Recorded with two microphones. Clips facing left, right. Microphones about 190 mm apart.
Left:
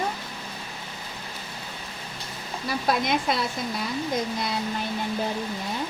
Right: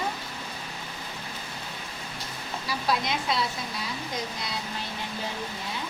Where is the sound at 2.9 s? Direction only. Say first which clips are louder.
Left 3 dB; 50° left (ahead or behind).